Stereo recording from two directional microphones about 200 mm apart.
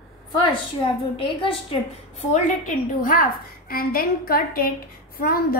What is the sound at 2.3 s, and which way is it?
A woman's voice, 40° left (ahead or behind).